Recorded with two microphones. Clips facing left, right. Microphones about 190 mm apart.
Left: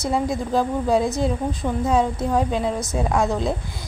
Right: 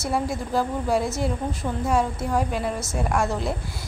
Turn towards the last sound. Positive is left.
turn(degrees=20)  # may be behind; listen again after turning